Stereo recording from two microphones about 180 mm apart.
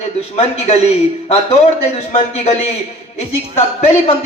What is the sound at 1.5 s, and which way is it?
A man's voice, 35° left (ahead or behind).